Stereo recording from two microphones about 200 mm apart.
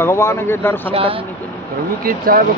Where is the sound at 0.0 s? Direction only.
15° left (ahead or behind).